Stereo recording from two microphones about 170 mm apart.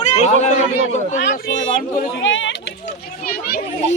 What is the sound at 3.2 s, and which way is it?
Children playing, 60° left (ahead or behind).